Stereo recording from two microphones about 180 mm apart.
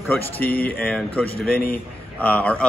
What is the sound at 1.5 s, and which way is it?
Speech, 55° left (ahead or behind).